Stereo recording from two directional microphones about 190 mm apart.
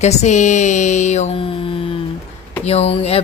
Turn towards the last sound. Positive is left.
turn(degrees=30)  # may be behind; listen again after turning